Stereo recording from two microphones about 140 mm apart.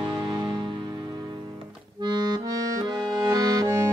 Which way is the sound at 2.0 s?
30° right (ahead or behind).